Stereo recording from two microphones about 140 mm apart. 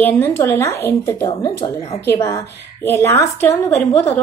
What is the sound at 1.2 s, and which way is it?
Speech, 30° left (ahead or behind).